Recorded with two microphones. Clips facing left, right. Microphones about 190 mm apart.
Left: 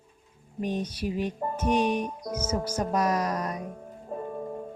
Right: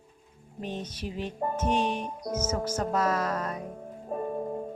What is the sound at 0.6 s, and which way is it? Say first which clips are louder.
Music: left 5 dB; 10° left (ahead or behind).